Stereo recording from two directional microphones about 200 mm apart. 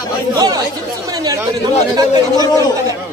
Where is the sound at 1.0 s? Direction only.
20° right (ahead or behind).